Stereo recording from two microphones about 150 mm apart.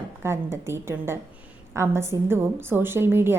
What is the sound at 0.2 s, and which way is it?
A woman's voice, 15° right (ahead or behind).